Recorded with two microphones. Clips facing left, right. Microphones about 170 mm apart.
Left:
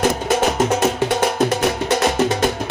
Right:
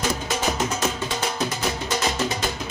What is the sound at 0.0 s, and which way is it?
Music, 55° left (ahead or behind).